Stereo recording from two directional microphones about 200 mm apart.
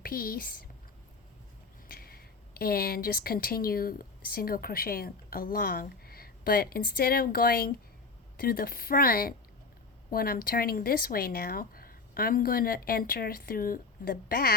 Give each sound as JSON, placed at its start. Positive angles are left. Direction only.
{"t": 0.0, "sound": "speech", "side_deg": 45}
{"t": 1.9, "sound": "speech", "side_deg": 50}